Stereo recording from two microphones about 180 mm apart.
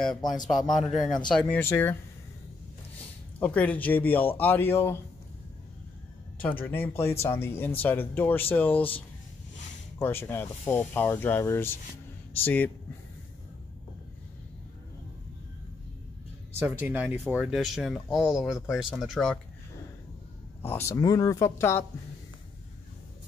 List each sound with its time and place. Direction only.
0.5 s speech: centre (ahead or behind)
3.3 s speech: 10° left (ahead or behind)
6.3 s speech: 10° left (ahead or behind)
9.9 s speech: 10° left (ahead or behind)
16.5 s speech: 10° right (ahead or behind)
20.6 s speech: 15° left (ahead or behind)